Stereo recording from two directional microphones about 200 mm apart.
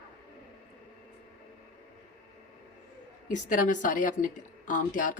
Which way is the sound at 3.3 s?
40° left (ahead or behind).